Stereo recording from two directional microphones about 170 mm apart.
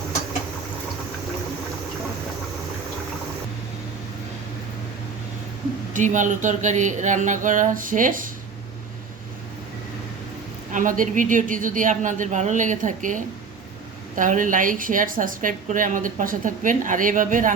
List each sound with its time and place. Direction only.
5.9 s a woman's voice: 45° right (ahead or behind)
10.7 s a woman's voice: 50° right (ahead or behind)